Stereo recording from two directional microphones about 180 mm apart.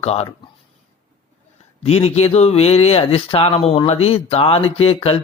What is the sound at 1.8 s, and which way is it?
Speech, 35° left (ahead or behind).